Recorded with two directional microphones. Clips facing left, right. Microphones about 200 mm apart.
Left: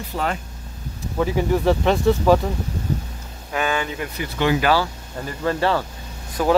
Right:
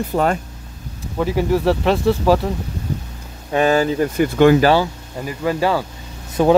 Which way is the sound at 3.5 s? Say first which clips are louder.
Right 8 dB; 35° right (ahead or behind).